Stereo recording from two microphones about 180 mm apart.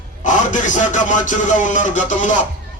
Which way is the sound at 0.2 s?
45° left (ahead or behind).